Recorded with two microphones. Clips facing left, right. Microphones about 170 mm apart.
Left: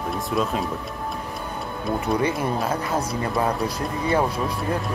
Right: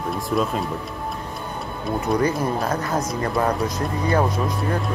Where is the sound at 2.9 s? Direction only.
30° left (ahead or behind).